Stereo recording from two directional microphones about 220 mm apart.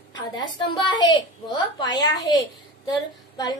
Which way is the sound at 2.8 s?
20° left (ahead or behind).